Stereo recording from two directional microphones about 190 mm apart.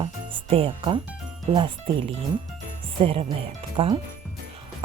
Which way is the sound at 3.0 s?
30° right (ahead or behind).